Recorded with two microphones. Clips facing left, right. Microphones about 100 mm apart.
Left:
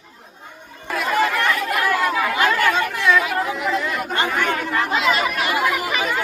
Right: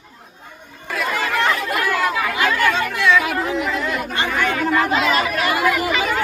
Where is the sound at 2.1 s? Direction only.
40° left (ahead or behind).